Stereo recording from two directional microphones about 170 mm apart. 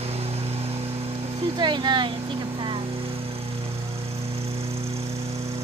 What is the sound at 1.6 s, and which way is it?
Speech, 25° right (ahead or behind).